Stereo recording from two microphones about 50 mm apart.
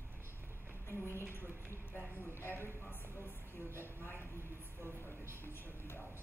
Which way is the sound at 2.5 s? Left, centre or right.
Left.